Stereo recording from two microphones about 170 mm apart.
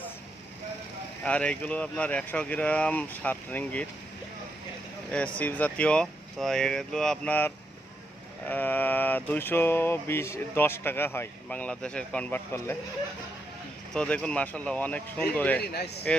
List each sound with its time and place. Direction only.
1.2 s speech: 5° left (ahead or behind)
5.1 s speech: 10° left (ahead or behind)
13.9 s speech: 5° left (ahead or behind)
15.6 s speech: 70° left (ahead or behind)